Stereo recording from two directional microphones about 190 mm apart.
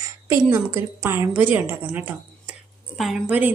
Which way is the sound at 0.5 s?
15° right (ahead or behind).